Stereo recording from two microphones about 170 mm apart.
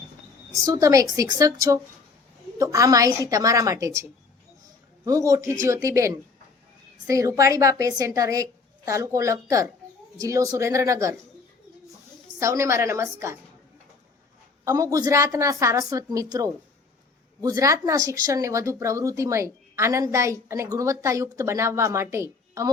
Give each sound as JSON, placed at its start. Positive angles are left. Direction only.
{"t": 0.6, "sound": "a woman's voice", "side_deg": -20}
{"t": 5.0, "sound": "a woman's voice", "side_deg": -20}
{"t": 12.4, "sound": "a woman's voice", "side_deg": -15}
{"t": 14.6, "sound": "a woman's voice", "side_deg": -20}